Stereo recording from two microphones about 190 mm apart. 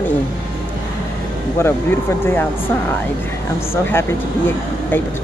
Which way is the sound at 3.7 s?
10° left (ahead or behind).